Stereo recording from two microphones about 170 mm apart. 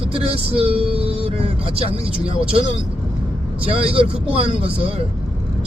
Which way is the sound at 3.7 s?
35° right (ahead or behind).